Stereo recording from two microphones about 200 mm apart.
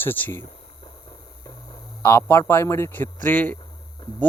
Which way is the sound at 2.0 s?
10° left (ahead or behind).